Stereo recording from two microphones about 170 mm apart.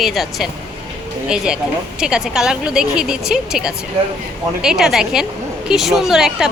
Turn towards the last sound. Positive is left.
turn(degrees=-5)  # may be behind; listen again after turning